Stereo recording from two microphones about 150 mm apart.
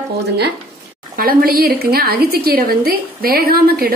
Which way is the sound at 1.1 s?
75° right (ahead or behind).